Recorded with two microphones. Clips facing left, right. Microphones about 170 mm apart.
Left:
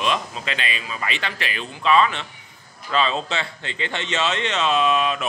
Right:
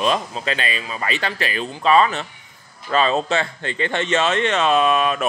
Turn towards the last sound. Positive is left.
turn(degrees=-50)  # may be behind; listen again after turning